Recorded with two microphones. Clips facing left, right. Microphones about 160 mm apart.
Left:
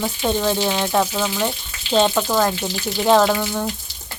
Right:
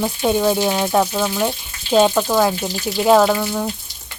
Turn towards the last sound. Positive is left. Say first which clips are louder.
# right 2 dB
turn(degrees=-5)  # may be behind; listen again after turning